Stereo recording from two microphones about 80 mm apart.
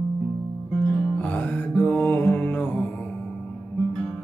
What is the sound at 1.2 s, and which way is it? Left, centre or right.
Music, left.